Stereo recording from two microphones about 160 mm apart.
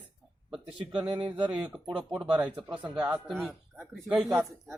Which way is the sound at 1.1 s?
30° right (ahead or behind).